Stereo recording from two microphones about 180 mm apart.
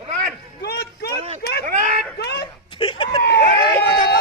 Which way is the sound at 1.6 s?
45° right (ahead or behind).